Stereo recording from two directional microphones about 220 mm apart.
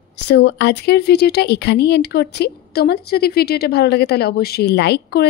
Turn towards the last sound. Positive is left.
turn(degrees=50)  # may be behind; listen again after turning